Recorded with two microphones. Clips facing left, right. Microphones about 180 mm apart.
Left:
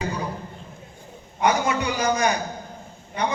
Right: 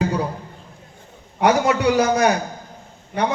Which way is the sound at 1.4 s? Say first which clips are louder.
Right 5 dB; 70° right (ahead or behind).